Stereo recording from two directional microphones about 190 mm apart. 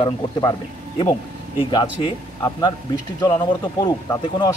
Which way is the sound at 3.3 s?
20° left (ahead or behind).